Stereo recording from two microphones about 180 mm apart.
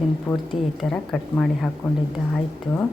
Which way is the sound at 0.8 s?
5° left (ahead or behind).